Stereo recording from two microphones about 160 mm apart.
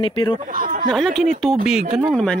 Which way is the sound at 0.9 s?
Centre (ahead or behind).